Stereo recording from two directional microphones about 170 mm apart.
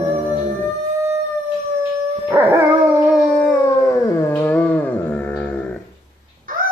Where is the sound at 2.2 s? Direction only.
15° right (ahead or behind).